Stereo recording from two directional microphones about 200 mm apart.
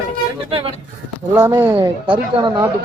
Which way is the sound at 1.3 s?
10° right (ahead or behind).